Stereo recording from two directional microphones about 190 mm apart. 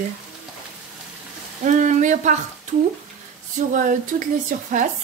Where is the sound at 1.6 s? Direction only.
40° right (ahead or behind).